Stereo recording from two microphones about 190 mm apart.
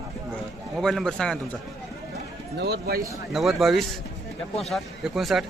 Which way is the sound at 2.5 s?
60° right (ahead or behind).